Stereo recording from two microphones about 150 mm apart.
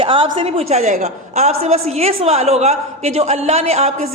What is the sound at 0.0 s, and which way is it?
A man's voice, 35° right (ahead or behind).